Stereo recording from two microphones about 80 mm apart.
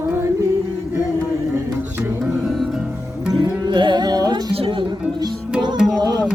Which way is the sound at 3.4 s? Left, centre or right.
Right.